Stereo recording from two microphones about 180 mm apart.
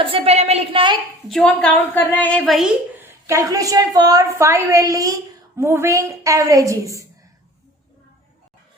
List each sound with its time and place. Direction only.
0.0 s a woman's voice: 35° right (ahead or behind)
1.3 s a woman's voice: 5° left (ahead or behind)
3.2 s a woman's voice: 20° right (ahead or behind)